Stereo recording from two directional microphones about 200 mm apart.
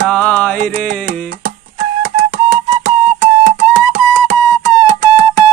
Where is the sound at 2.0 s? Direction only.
45° right (ahead or behind).